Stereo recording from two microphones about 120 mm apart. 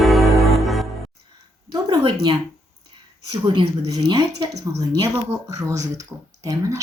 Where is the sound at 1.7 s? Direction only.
35° right (ahead or behind).